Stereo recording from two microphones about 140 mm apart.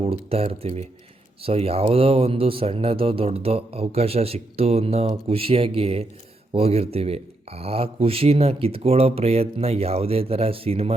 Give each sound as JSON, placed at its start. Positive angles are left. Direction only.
{"t": 0.0, "sound": "speech", "side_deg": -45}